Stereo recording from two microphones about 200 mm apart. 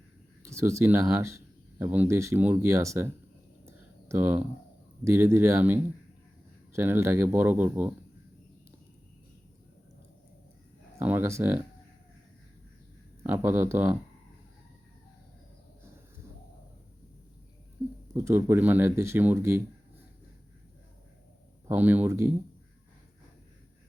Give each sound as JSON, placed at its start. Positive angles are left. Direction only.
{"t": 0.4, "sound": "speech", "side_deg": -15}
{"t": 3.7, "sound": "a sound", "side_deg": -10}
{"t": 5.0, "sound": "speech", "side_deg": -10}
{"t": 11.0, "sound": "speech", "side_deg": -10}
{"t": 13.2, "sound": "speech", "side_deg": -10}
{"t": 18.1, "sound": "speech", "side_deg": -15}
{"t": 21.7, "sound": "speech", "side_deg": -10}